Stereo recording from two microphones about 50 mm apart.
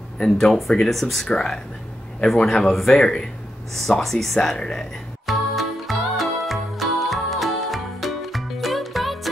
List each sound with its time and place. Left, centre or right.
0.2 s speech: centre
3.0 s speech: centre
3.7 s speech: centre
4.6 s speech: centre
5.2 s music: centre